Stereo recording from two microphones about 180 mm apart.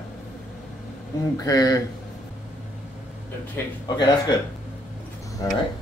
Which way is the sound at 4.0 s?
25° left (ahead or behind).